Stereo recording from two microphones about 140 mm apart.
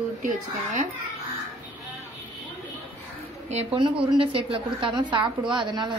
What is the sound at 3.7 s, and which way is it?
A woman's voice, 40° right (ahead or behind).